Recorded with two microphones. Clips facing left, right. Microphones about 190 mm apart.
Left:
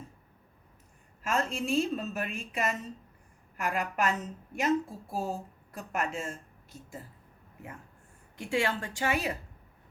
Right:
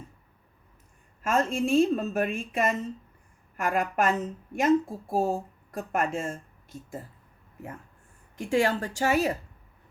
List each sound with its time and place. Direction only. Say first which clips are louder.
1.2 s speech: right 6 dB; 45° right (ahead or behind)
8.4 s speech: right 5 dB; 40° right (ahead or behind)